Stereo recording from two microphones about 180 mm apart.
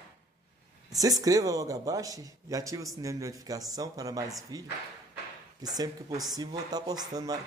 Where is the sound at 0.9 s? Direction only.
20° right (ahead or behind).